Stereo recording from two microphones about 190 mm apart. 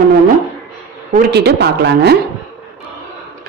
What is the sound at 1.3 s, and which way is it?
Speech, 60° right (ahead or behind).